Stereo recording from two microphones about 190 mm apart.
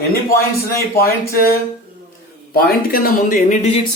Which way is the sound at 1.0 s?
55° left (ahead or behind).